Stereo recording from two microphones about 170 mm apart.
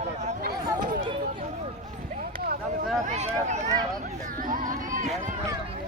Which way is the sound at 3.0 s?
40° right (ahead or behind).